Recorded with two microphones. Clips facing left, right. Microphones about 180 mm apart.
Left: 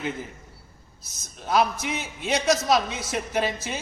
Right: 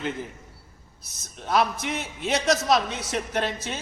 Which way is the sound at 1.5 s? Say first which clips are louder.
Left 1 dB; centre (ahead or behind).